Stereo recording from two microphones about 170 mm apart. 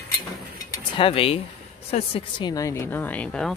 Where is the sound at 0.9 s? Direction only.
30° left (ahead or behind).